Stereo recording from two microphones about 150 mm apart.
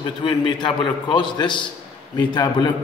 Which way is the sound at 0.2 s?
30° left (ahead or behind).